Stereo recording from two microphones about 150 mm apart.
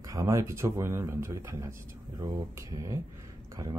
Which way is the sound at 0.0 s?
20° right (ahead or behind).